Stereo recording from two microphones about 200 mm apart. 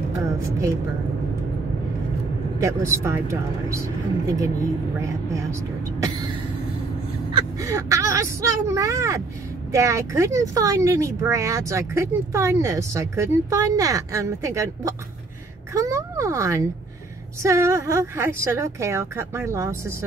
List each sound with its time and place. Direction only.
2.6 s speech: 15° right (ahead or behind)
7.5 s speech: 15° right (ahead or behind)